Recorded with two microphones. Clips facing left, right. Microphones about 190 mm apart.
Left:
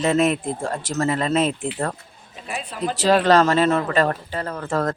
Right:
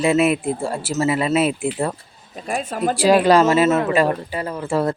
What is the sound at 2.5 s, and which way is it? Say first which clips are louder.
Speech: right 5 dB; 45° right (ahead or behind).